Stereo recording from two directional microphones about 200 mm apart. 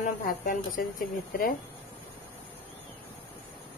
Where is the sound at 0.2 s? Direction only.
45° left (ahead or behind).